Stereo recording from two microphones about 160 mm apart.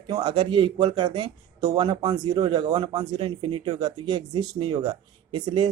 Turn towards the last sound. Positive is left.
turn(degrees=-30)  # may be behind; listen again after turning